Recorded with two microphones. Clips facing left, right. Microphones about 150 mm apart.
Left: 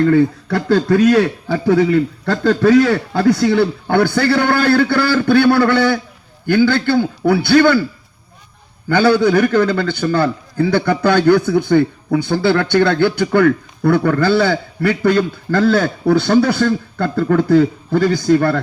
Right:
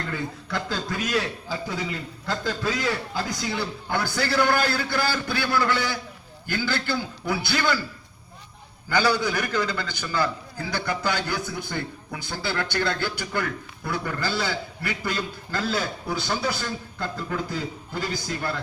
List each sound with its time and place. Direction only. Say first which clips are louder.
0.1 s a man's voice: left 17 dB; 65° left (ahead or behind)
8.9 s a man's voice: left 11 dB; 60° left (ahead or behind)